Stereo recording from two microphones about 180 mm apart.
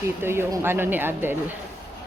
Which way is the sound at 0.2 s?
15° right (ahead or behind).